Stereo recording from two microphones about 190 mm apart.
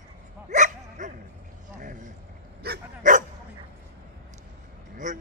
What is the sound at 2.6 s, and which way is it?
Dog, 50° right (ahead or behind).